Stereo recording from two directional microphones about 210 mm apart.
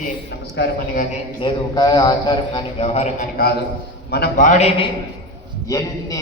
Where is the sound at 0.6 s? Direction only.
55° left (ahead or behind).